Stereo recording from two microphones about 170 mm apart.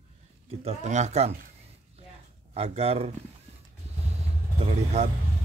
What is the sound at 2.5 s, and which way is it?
Speech, 35° right (ahead or behind).